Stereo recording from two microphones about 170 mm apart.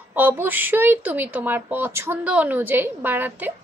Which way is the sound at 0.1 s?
10° right (ahead or behind).